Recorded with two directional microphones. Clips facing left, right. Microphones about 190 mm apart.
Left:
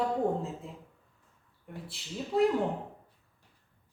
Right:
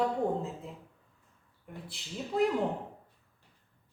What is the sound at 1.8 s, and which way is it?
Speech, centre (ahead or behind).